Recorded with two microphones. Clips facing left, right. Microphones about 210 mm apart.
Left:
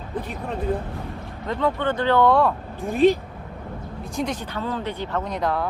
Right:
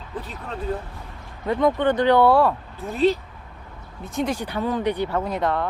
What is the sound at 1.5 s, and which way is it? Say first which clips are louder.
Speech: right 4 dB; 15° right (ahead or behind).